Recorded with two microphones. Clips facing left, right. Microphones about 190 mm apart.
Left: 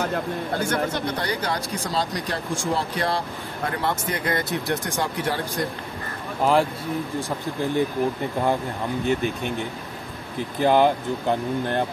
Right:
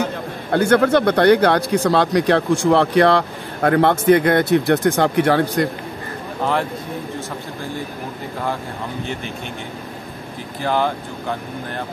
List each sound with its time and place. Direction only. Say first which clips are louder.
0.5 s speech: right 13 dB; 65° right (ahead or behind)
10.6 s speech: left 3 dB; 20° left (ahead or behind)